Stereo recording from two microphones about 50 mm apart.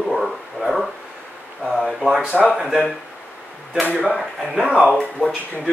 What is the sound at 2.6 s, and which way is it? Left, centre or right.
Speech, centre.